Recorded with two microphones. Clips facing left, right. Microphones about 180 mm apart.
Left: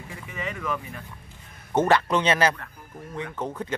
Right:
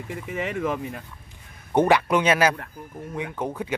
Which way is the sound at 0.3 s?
55° right (ahead or behind).